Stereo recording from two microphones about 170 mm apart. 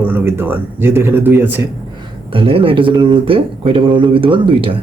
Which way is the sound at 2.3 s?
30° right (ahead or behind).